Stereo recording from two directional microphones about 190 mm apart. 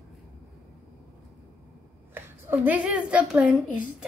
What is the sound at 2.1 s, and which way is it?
A woman's voice, 10° right (ahead or behind).